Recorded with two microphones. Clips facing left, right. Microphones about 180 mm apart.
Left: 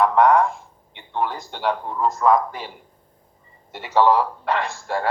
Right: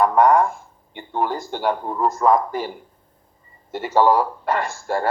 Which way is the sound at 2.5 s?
45° right (ahead or behind).